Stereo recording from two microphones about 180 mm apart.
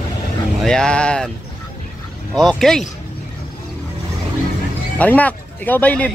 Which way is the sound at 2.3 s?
Centre (ahead or behind).